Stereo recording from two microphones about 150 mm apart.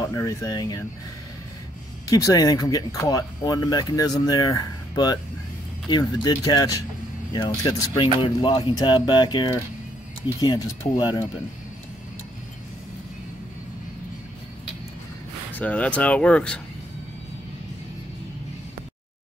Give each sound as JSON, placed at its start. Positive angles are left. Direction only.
{"t": 0.0, "sound": "speech", "side_deg": 20}
{"t": 2.0, "sound": "speech", "side_deg": 25}
{"t": 15.5, "sound": "speech", "side_deg": 10}